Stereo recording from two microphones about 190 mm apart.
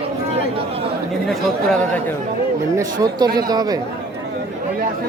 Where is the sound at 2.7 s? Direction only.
20° right (ahead or behind).